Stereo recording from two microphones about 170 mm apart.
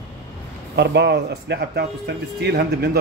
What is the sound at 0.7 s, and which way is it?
Speech, 85° right.